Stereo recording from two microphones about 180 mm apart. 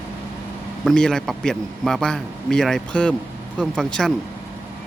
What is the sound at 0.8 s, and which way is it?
A man's voice, centre (ahead or behind).